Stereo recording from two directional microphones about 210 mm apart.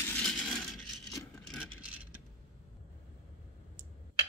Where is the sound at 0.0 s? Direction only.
5° left (ahead or behind).